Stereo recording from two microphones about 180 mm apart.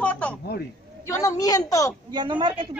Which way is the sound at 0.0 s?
5° left (ahead or behind).